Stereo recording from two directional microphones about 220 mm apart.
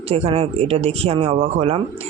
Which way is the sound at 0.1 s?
25° right (ahead or behind).